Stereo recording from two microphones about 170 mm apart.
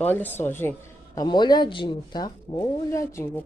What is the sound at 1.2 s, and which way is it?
Speech, 25° left (ahead or behind).